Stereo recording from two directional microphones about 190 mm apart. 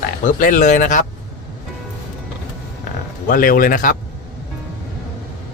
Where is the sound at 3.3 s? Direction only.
45° left (ahead or behind).